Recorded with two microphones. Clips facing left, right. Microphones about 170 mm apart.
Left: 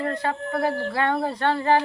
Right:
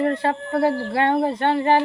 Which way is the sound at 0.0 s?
30° right (ahead or behind).